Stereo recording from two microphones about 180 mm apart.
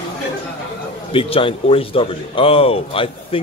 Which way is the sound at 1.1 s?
30° left (ahead or behind).